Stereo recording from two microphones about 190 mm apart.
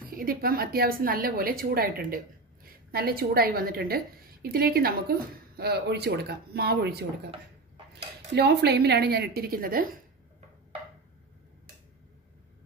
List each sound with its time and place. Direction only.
0.1 s a woman's voice: 50° right (ahead or behind)
8.4 s a woman's voice: 60° right (ahead or behind)